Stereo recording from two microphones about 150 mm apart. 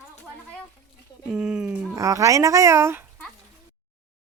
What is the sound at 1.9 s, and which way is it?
Speech, 20° right (ahead or behind).